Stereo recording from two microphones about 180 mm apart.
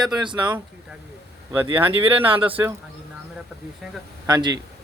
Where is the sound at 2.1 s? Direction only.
30° right (ahead or behind).